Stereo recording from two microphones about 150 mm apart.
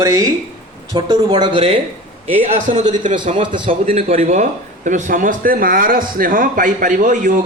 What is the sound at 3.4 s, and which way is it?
Speech, 30° right (ahead or behind).